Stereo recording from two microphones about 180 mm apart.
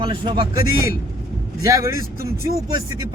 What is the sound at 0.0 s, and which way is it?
Speech, 25° right (ahead or behind).